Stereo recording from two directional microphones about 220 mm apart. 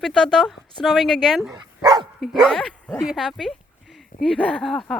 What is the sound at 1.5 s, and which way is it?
Dog, 20° right (ahead or behind).